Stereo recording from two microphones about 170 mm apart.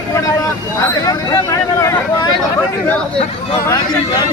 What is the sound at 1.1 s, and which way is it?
Speech, 20° left (ahead or behind).